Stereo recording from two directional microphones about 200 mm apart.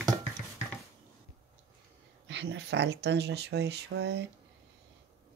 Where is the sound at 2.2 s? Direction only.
60° right (ahead or behind).